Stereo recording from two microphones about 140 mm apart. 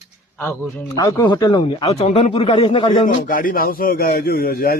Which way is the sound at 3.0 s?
85° left.